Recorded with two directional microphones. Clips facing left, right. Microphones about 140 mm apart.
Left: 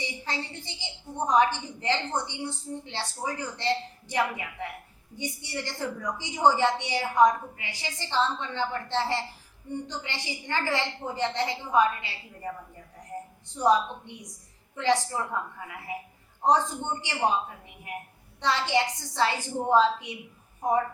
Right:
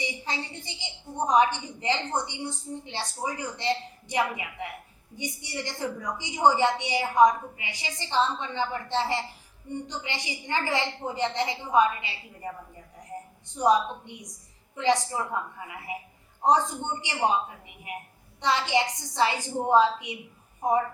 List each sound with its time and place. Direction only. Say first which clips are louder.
0.0 s a woman's voice: right 1 dB; 15° right (ahead or behind)
13.6 s a woman's voice: right 1 dB; 15° right (ahead or behind)